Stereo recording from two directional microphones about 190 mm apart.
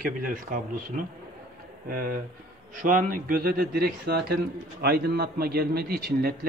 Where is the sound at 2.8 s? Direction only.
45° right (ahead or behind).